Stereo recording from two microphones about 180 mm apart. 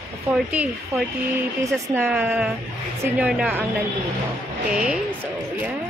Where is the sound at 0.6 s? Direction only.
10° right (ahead or behind).